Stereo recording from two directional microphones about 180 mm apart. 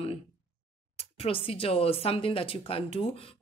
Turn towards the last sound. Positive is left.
turn(degrees=30)  # may be behind; listen again after turning